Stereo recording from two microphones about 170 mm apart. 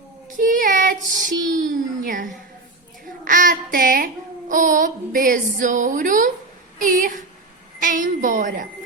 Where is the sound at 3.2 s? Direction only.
50° right (ahead or behind).